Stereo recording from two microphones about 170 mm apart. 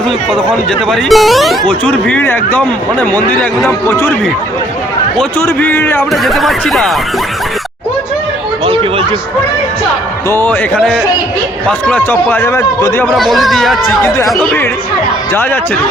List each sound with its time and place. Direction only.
0.9 s speech: centre (ahead or behind); by 4.1 s 15° left (ahead or behind)
5.4 s speech: 10° left (ahead or behind)
6.0 s speech: centre (ahead or behind)
8.6 s a sound: 30° right (ahead or behind)
10.2 s speech: 15° left (ahead or behind)
11.9 s speech: 10° left (ahead or behind)
13.1 s speech: centre (ahead or behind)